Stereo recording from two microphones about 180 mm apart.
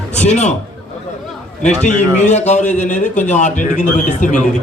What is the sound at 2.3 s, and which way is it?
A man's voice, 40° left (ahead or behind).